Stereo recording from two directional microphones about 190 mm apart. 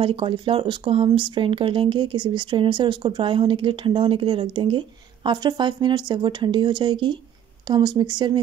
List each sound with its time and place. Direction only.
0.0 s speech: 25° right (ahead or behind)